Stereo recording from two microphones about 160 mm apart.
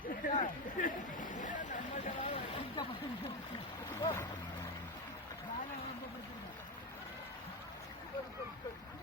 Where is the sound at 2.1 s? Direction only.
35° left (ahead or behind).